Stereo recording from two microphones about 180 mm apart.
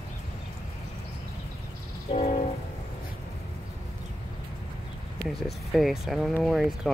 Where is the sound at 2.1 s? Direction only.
40° left (ahead or behind).